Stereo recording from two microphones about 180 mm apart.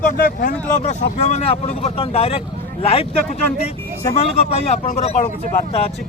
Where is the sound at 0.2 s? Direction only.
50° left (ahead or behind).